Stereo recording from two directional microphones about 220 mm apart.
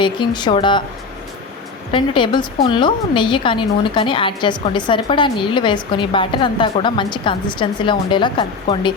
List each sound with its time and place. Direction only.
0.0 s a woman's voice: 20° left (ahead or behind)
1.9 s a woman's voice: 20° left (ahead or behind)